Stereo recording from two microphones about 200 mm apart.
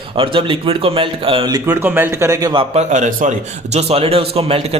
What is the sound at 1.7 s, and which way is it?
Speech, 10° right (ahead or behind).